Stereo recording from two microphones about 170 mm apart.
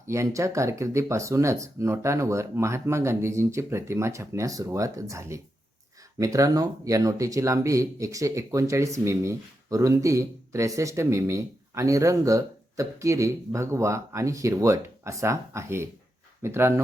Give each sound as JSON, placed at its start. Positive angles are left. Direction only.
{"t": 0.1, "sound": "speech", "side_deg": -15}